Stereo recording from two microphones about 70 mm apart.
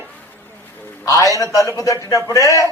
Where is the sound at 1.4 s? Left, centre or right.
Left.